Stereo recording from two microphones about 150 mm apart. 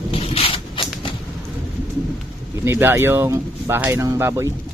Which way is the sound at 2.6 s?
15° right (ahead or behind).